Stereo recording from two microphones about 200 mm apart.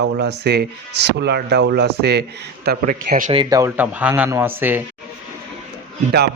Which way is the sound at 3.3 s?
20° right (ahead or behind).